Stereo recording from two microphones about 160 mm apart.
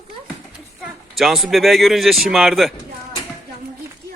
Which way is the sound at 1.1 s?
Centre (ahead or behind).